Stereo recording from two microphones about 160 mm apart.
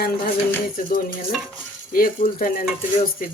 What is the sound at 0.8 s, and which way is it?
Speech, 60° left (ahead or behind).